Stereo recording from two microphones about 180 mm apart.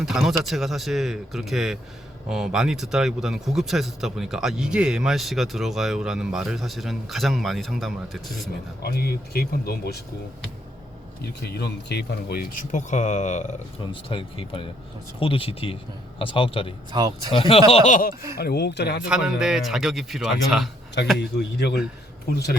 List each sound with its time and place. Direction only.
0.0 s speech: centre (ahead or behind)
8.8 s speech: 60° left (ahead or behind)
11.2 s speech: 65° left (ahead or behind); by 13.5 s 40° left (ahead or behind)
13.9 s a man's voice: 30° left (ahead or behind)
16.9 s speech: 20° right (ahead or behind)
17.3 s a man's voice: 30° left (ahead or behind)
17.7 s speech: 40° left (ahead or behind)
18.3 s speech: 65° left (ahead or behind)
19.0 s speech: 5° right (ahead or behind)
21.2 s speech: 70° left (ahead or behind)